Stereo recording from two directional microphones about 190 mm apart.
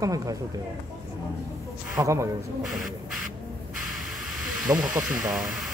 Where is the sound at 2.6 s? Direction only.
Centre (ahead or behind).